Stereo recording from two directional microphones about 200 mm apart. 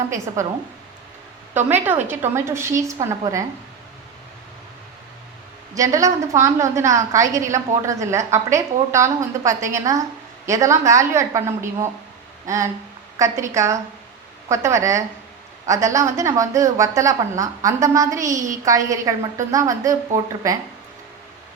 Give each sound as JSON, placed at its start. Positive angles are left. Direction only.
{"t": 1.5, "sound": "a woman's voice", "side_deg": -10}
{"t": 5.7, "sound": "a woman's voice", "side_deg": -15}